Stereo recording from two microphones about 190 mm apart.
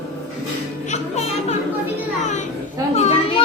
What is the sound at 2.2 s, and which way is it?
Children playing, 40° left (ahead or behind).